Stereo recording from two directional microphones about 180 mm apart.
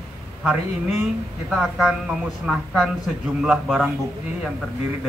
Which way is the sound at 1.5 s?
Centre (ahead or behind).